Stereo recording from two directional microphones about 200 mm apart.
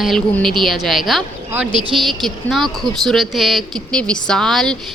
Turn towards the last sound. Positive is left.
turn(degrees=0)  # may be behind; listen again after turning